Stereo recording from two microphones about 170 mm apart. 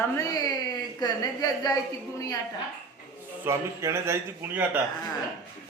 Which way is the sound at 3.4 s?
15° right (ahead or behind).